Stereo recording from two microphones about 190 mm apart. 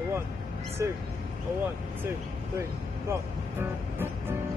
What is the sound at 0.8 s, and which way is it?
Speech, 15° right (ahead or behind).